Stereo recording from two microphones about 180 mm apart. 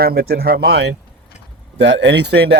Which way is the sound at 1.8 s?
80° right.